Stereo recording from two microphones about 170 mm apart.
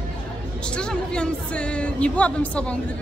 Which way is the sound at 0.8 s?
5° left (ahead or behind).